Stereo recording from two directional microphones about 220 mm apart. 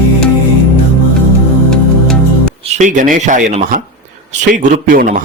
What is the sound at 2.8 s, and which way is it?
Speech, 35° right (ahead or behind).